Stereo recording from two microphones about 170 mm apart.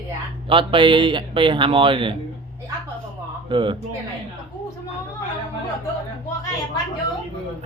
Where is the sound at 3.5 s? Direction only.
30° right (ahead or behind).